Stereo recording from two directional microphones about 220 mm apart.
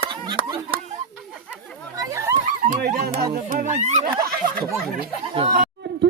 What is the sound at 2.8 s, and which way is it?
Music, 40° right (ahead or behind).